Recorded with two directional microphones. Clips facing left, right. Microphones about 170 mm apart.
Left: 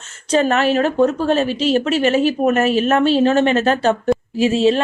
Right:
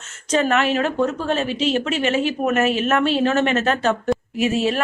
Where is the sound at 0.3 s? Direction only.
35° left (ahead or behind).